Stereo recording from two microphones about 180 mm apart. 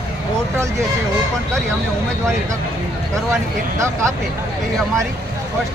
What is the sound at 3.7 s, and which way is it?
Speech, 15° right (ahead or behind).